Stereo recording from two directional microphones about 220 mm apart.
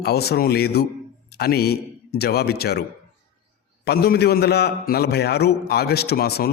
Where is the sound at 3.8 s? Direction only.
45° left (ahead or behind).